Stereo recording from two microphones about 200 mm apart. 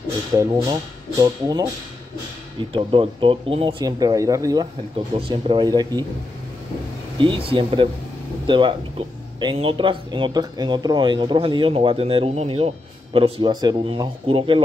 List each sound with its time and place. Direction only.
1.2 s speech: 20° right (ahead or behind)
2.7 s speech: 25° right (ahead or behind)
7.2 s speech: 25° right (ahead or behind)